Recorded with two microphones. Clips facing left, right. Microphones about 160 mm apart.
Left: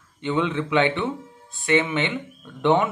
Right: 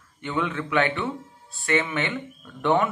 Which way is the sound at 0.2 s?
20° left (ahead or behind).